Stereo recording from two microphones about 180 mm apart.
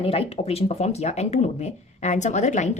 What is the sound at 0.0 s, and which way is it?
Speech, 35° left (ahead or behind).